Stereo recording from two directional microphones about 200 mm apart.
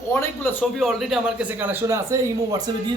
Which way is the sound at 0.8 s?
Centre (ahead or behind).